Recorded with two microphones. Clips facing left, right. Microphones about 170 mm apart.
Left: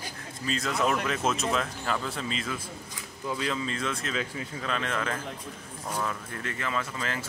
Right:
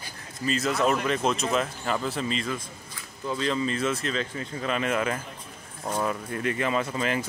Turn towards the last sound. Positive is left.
turn(degrees=-20)  # may be behind; listen again after turning